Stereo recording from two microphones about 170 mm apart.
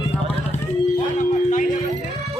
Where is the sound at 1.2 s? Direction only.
50° left (ahead or behind).